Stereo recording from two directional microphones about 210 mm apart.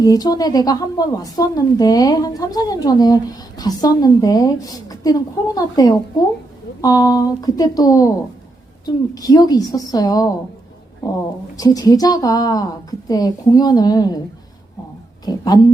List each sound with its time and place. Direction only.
0.0 s a woman's voice: 20° left (ahead or behind)
9.1 s a woman's voice: 15° left (ahead or behind)
11.5 s a woman's voice: 15° left (ahead or behind)
15.2 s a woman's voice: 20° left (ahead or behind)